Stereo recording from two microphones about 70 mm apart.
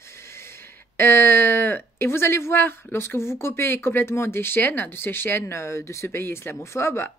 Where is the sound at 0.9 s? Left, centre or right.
Left.